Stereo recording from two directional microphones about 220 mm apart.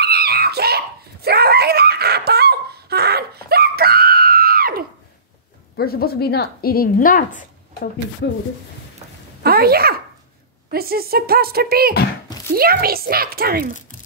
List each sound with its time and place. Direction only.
0.0 s screaming: 45° right (ahead or behind)
5.8 s a woman's voice: 45° left (ahead or behind)
9.4 s a woman's voice: 45° right (ahead or behind)